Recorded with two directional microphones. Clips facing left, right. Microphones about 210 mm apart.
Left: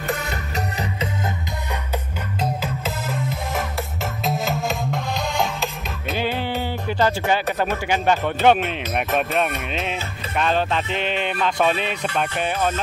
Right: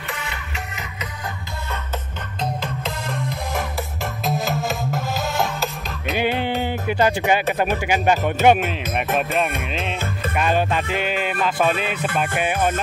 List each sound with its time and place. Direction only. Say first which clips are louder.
0.1 s music: left 6 dB; 40° left (ahead or behind)
2.4 s music: even; 5° left (ahead or behind)
6.1 s music: right 3 dB; 20° right (ahead or behind)
9.7 s music: even; centre (ahead or behind)
10.3 s music: even; 10° right (ahead or behind)